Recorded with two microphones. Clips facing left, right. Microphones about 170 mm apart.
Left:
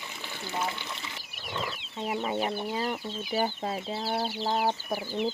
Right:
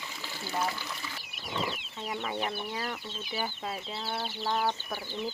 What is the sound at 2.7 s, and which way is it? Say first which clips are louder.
Speech: left 5 dB; 25° left (ahead or behind).